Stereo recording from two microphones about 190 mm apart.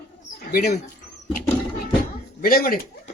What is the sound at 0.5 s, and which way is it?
Speech, 40° left (ahead or behind).